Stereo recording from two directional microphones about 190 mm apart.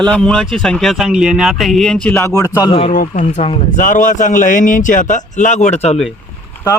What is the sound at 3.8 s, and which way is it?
A man's voice, 45° left (ahead or behind).